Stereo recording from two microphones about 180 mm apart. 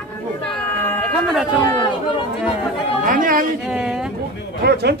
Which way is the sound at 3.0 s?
50° right (ahead or behind).